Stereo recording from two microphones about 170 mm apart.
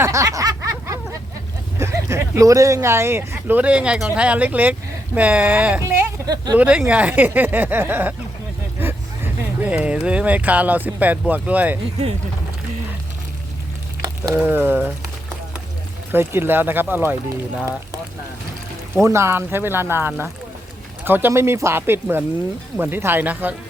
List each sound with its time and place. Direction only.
0.0 s a sound: 20° right (ahead or behind)
1.8 s speech: 15° right (ahead or behind)
5.8 s a sound: 15° right (ahead or behind)
6.6 s speech: 5° right (ahead or behind)
14.4 s speech: 10° right (ahead or behind)
16.1 s speech: 15° right (ahead or behind)
18.9 s speech: 15° right (ahead or behind)